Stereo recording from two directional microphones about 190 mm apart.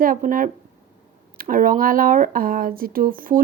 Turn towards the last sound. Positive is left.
turn(degrees=-50)  # may be behind; listen again after turning